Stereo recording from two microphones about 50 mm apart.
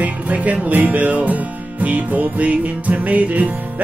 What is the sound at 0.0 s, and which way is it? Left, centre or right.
Music, right.